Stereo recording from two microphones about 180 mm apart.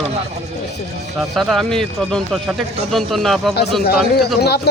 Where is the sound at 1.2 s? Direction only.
Centre (ahead or behind).